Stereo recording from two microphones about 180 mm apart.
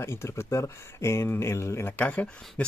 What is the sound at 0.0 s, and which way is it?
Speech, 15° left (ahead or behind).